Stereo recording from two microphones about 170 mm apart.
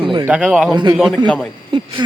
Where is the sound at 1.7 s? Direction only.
30° right (ahead or behind).